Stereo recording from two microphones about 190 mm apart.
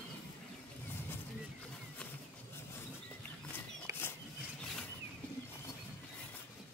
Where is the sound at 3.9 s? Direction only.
15° right (ahead or behind).